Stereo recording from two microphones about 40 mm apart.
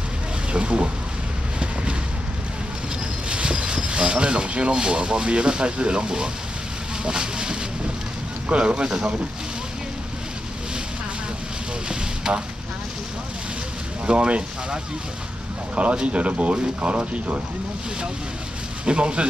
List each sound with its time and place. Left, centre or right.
0.5 s speech: right
3.3 s speech: right
12.2 s speech: centre
14.0 s speech: right
18.9 s speech: right